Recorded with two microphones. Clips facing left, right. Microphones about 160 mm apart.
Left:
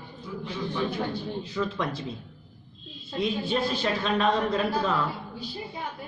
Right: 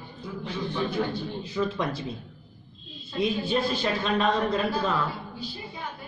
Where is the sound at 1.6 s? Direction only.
15° right (ahead or behind).